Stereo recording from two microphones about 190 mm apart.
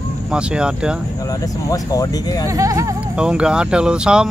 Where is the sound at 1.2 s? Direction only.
20° left (ahead or behind).